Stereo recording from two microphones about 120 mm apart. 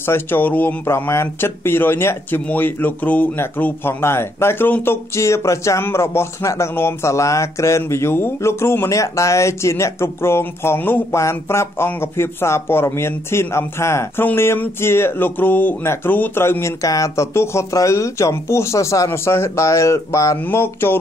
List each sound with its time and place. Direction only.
0.0 s speech: 20° left (ahead or behind)